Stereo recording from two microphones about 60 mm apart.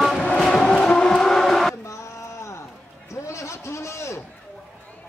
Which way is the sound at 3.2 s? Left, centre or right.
Left.